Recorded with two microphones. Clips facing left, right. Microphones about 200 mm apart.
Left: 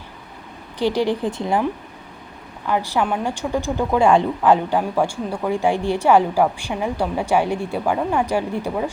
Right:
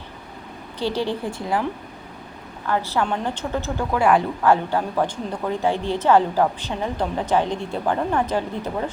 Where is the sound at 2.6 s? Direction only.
15° left (ahead or behind).